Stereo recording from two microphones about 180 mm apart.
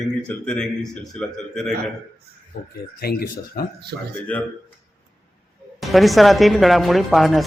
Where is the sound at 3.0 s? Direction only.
55° left (ahead or behind).